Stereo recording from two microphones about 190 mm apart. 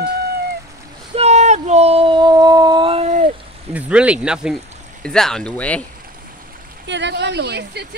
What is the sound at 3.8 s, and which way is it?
Speech, 5° right (ahead or behind).